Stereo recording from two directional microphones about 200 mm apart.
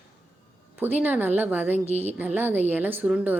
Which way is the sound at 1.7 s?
30° right (ahead or behind).